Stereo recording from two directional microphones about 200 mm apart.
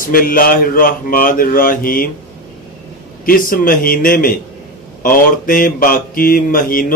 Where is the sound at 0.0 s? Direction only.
45° left (ahead or behind).